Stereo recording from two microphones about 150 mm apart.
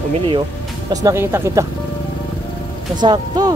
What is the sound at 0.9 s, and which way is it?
Speech, 20° right (ahead or behind).